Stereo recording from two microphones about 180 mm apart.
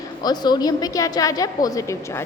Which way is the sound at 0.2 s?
20° left (ahead or behind).